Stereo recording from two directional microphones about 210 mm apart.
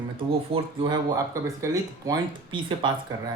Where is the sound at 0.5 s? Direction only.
25° right (ahead or behind).